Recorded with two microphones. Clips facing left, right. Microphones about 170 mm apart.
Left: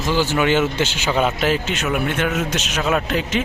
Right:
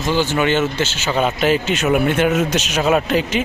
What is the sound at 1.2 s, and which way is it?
Speech, centre (ahead or behind).